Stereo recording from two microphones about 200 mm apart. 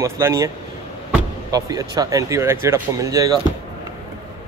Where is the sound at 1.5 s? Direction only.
20° right (ahead or behind).